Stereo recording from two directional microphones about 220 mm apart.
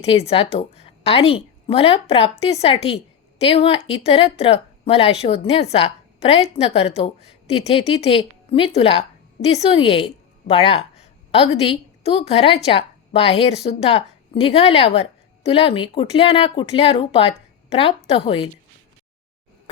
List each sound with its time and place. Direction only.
0.0 s a woman's voice: 25° left (ahead or behind)